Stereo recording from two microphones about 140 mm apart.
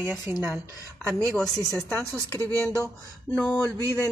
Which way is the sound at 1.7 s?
20° right (ahead or behind).